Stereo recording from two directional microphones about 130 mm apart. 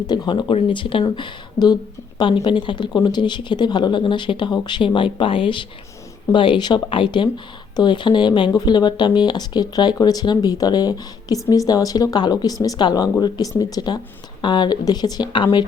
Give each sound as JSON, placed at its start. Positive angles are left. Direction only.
{"t": 0.1, "sound": "speech", "side_deg": 35}